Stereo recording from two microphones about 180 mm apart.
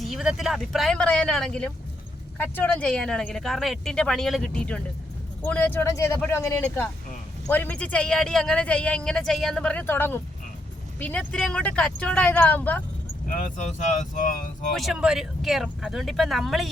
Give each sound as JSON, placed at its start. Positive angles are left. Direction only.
{"t": 0.0, "sound": "speech", "side_deg": 0}
{"t": 13.2, "sound": "speech", "side_deg": 45}
{"t": 14.7, "sound": "speech", "side_deg": 0}